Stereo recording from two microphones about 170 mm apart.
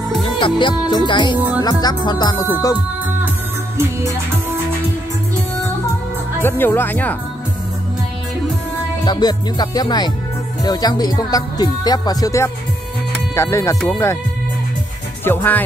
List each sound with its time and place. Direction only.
0.2 s speech: 30° left (ahead or behind)
6.4 s speech: 10° left (ahead or behind)
9.0 s speech: 25° left (ahead or behind)
15.2 s speech: 10° left (ahead or behind)